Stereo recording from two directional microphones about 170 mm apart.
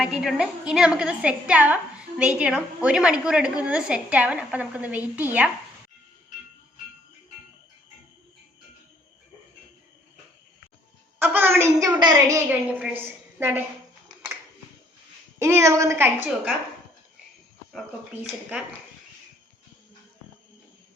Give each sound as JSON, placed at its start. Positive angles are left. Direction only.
{"t": 0.0, "sound": "a woman's voice", "side_deg": -5}
{"t": 11.2, "sound": "a woman's voice", "side_deg": -10}
{"t": 11.9, "sound": "a woman's voice", "side_deg": -25}
{"t": 12.5, "sound": "a woman's voice", "side_deg": -10}
{"t": 15.4, "sound": "a woman's voice", "side_deg": -15}